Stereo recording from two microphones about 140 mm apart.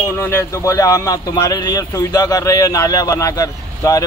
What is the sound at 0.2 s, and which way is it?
Speech, 20° left (ahead or behind).